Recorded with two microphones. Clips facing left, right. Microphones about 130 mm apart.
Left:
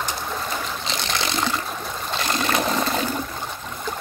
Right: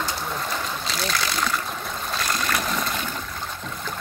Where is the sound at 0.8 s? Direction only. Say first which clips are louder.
Even; 25° left (ahead or behind).